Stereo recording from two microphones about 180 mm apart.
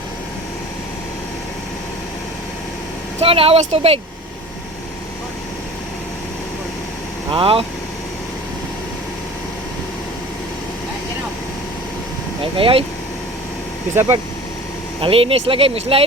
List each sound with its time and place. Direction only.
3.2 s speech: 30° right (ahead or behind)
7.3 s speech: 30° right (ahead or behind)
12.5 s speech: 30° right (ahead or behind)
13.9 s speech: 15° right (ahead or behind)
15.0 s speech: 30° right (ahead or behind)